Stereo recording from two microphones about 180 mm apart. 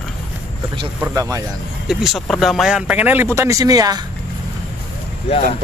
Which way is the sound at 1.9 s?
Centre (ahead or behind).